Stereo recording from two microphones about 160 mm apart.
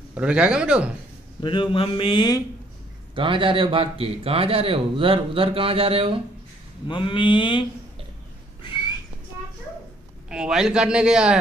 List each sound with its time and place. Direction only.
0.1 s speech: 5° right (ahead or behind)
1.4 s speech: 30° left (ahead or behind)
3.2 s a man's voice: 30° right (ahead or behind)
6.9 s a sound: 30° left (ahead or behind)
10.3 s a man's voice: 5° right (ahead or behind)